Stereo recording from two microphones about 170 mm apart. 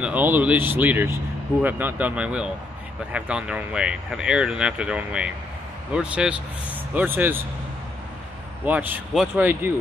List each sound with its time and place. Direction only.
0.0 s speech: 10° right (ahead or behind)
8.6 s speech: 10° right (ahead or behind)